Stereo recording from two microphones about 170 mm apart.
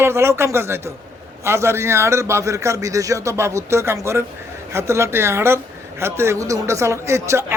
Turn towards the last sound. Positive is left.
turn(degrees=-15)  # may be behind; listen again after turning